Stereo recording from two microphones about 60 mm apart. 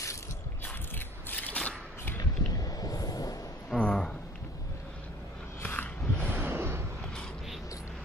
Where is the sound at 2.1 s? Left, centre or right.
Left.